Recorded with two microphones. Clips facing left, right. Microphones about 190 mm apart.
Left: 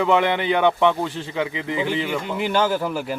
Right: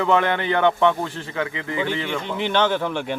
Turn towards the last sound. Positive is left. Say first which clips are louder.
# even
turn(degrees=5)  # may be behind; listen again after turning